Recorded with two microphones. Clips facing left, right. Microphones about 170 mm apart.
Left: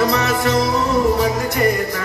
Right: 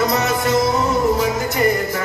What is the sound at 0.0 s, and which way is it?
Music, 20° right (ahead or behind).